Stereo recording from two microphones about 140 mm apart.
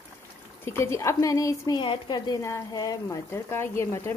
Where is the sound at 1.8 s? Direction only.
35° left (ahead or behind).